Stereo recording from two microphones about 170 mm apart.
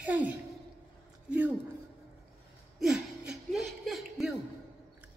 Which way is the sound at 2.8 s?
5° right (ahead or behind).